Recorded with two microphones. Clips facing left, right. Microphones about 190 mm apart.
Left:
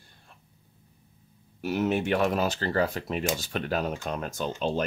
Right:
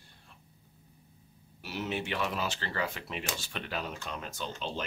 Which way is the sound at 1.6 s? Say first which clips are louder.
Left 9 dB; 50° left (ahead or behind).